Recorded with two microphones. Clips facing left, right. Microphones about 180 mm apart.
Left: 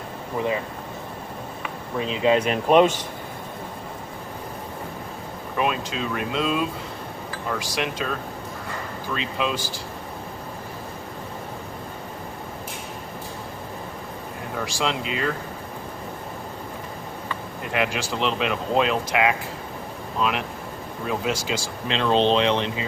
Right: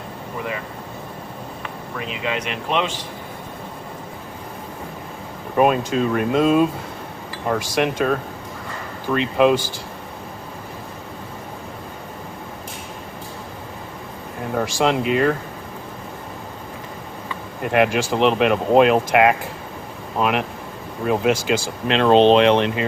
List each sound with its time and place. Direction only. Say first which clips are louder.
2.0 s speech: left 6 dB; 30° left (ahead or behind)
5.5 s speech: right 8 dB; 50° right (ahead or behind)
14.5 s speech: right 7 dB; 50° right (ahead or behind)
17.6 s speech: right 8 dB; 55° right (ahead or behind)